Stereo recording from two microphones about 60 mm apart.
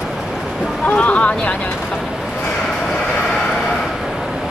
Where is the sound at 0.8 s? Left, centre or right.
Left.